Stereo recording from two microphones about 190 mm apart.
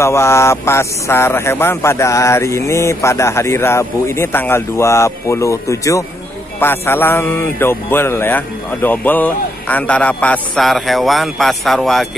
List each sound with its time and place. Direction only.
0.0 s speech: 15° left (ahead or behind)